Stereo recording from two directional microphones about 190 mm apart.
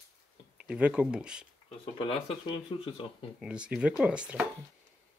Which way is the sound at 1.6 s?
25° left (ahead or behind).